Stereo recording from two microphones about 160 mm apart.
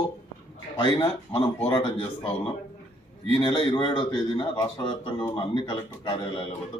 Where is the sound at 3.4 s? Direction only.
30° left (ahead or behind).